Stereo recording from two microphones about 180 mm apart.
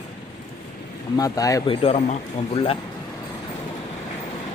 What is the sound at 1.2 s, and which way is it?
Speech, 20° left (ahead or behind).